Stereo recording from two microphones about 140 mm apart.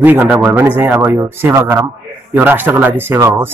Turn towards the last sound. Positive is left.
turn(degrees=-20)  # may be behind; listen again after turning